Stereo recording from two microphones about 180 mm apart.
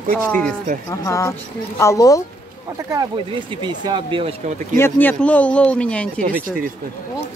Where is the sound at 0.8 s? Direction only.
15° left (ahead or behind).